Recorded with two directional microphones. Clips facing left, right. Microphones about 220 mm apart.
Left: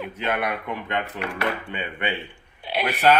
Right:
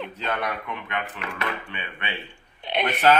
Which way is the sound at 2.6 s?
5° left (ahead or behind).